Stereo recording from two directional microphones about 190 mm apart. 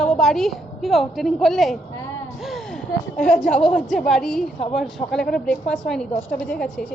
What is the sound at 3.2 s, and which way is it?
Speech, 45° left (ahead or behind).